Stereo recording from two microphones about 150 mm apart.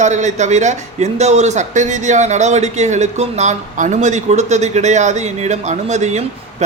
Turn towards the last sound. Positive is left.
turn(degrees=-50)  # may be behind; listen again after turning